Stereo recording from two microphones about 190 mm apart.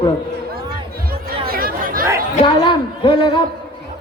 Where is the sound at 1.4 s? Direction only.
50° right (ahead or behind).